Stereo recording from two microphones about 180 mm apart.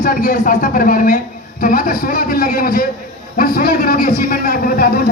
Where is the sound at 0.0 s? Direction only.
50° left (ahead or behind).